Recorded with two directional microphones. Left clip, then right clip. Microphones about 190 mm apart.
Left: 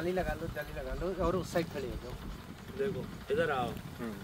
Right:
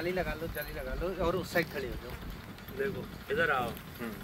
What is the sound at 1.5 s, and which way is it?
Speech, 15° right (ahead or behind).